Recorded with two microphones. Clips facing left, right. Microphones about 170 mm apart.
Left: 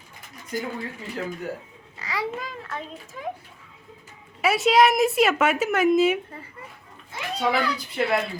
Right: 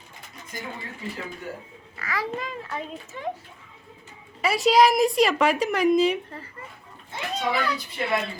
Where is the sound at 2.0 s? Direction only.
20° left (ahead or behind).